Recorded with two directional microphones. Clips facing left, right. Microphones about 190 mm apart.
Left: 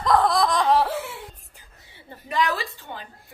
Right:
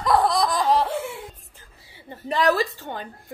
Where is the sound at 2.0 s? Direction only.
30° right (ahead or behind).